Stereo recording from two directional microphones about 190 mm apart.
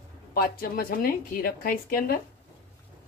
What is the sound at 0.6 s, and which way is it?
Speech, 50° left (ahead or behind).